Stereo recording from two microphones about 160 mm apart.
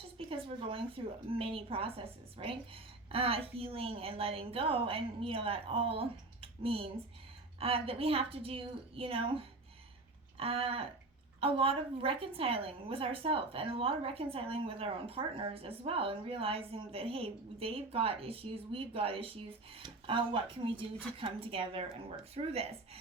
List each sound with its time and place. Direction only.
0.3 s a woman's voice: 35° right (ahead or behind)